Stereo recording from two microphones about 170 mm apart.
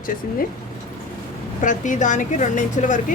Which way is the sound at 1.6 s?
50° left (ahead or behind).